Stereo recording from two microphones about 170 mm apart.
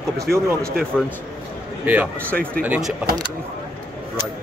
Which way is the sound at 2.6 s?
5° right (ahead or behind).